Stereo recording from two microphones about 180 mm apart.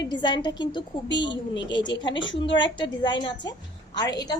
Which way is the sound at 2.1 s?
90° left.